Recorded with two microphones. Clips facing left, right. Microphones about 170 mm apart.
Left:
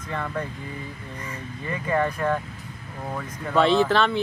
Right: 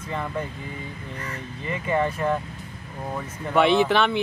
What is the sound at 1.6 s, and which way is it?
Speech, centre (ahead or behind).